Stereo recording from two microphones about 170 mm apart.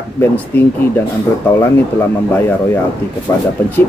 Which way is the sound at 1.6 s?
15° left (ahead or behind).